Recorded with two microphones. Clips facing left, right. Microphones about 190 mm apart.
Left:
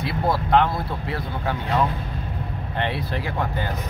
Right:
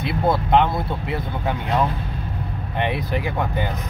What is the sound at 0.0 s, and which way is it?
Speech, 20° right (ahead or behind).